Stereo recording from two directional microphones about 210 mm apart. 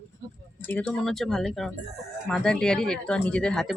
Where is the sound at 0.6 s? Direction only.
5° left (ahead or behind).